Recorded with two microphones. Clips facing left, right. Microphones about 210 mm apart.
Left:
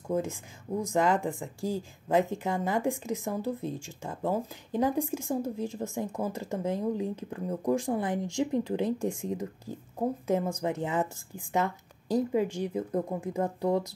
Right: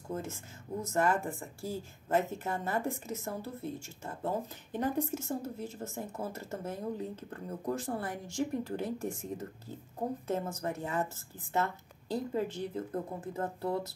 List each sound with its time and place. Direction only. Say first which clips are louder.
0.1 s speech: left 8 dB; 15° left (ahead or behind)